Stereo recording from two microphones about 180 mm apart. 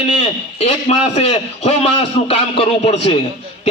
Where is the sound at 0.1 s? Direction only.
35° left (ahead or behind).